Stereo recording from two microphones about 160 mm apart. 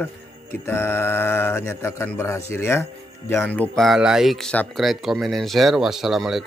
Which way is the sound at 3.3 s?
10° left (ahead or behind).